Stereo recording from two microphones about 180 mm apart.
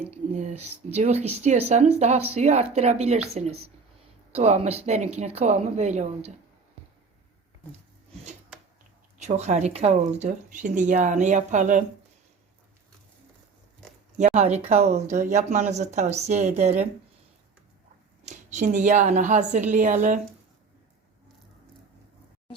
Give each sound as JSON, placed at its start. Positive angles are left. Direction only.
{"t": 0.1, "sound": "speech", "side_deg": -40}
{"t": 9.1, "sound": "speech", "side_deg": -40}
{"t": 14.2, "sound": "speech", "side_deg": -40}
{"t": 18.3, "sound": "a woman's voice", "side_deg": -40}